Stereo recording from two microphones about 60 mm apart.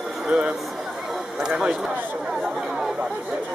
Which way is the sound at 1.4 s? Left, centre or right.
Centre.